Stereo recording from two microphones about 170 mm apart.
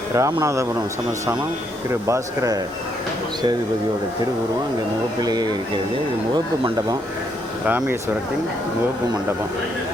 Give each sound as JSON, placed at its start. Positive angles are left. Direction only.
{"t": 0.1, "sound": "speech", "side_deg": -20}
{"t": 1.9, "sound": "speech", "side_deg": -15}
{"t": 5.2, "sound": "speech", "side_deg": -25}
{"t": 7.6, "sound": "speech", "side_deg": -10}